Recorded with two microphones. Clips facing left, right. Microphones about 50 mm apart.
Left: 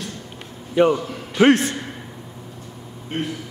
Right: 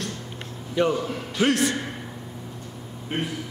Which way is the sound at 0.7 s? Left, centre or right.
Left.